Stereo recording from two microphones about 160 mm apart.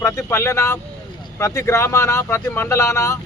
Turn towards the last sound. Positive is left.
turn(degrees=15)  # may be behind; listen again after turning